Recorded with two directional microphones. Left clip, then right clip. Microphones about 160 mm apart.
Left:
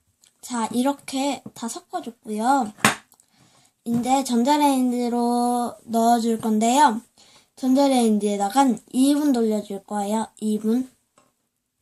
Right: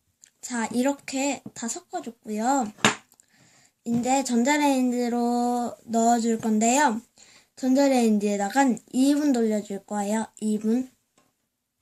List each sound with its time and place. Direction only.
0.4 s speech: 20° right (ahead or behind)
3.8 s a woman's voice: 20° right (ahead or behind)